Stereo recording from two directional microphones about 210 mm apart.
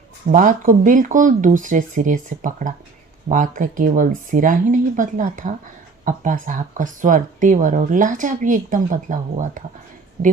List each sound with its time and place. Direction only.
0.3 s speech: 40° right (ahead or behind)
10.2 s a woman's voice: 50° right (ahead or behind)